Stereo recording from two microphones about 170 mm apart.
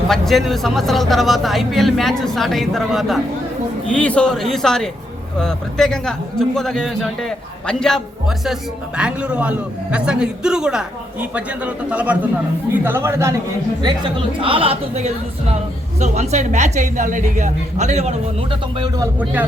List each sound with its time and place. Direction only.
0.1 s speech: centre (ahead or behind)
9.0 s a man's voice: 5° right (ahead or behind)
14.3 s a woman's voice: 30° right (ahead or behind)